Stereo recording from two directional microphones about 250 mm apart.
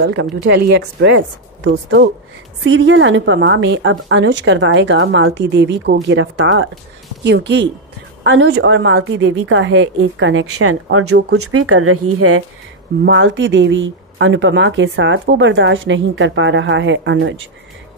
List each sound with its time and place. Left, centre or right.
0.0 s speech: right
13.0 s speech: right